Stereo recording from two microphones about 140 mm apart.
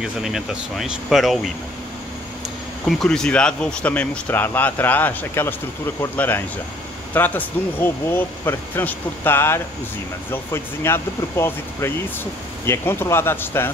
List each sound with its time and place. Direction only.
0.0 s speech: 5° right (ahead or behind)
2.8 s speech: 5° left (ahead or behind)